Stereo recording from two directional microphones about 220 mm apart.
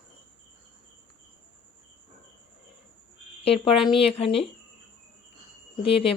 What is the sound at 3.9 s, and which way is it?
Speech, 25° left (ahead or behind).